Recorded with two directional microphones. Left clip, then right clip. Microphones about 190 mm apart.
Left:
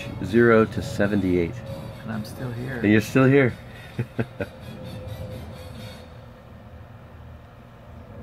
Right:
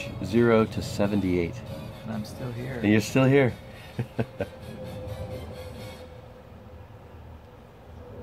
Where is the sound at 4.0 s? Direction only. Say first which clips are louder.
Left 1 dB; 10° right (ahead or behind).